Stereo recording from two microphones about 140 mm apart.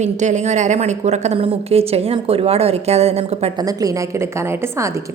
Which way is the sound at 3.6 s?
25° right (ahead or behind).